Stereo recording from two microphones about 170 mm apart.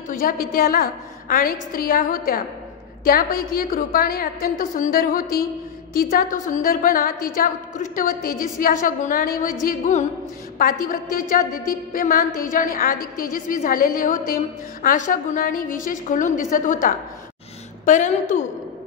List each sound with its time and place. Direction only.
0.1 s a woman's voice: 55° left (ahead or behind)